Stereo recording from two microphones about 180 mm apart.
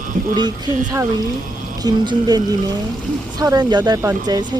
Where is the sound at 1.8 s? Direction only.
20° right (ahead or behind).